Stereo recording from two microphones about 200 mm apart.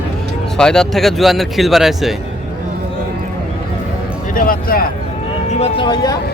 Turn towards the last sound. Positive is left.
turn(degrees=20)  # may be behind; listen again after turning